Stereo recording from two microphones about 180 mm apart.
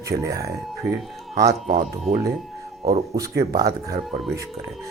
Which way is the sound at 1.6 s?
50° right (ahead or behind).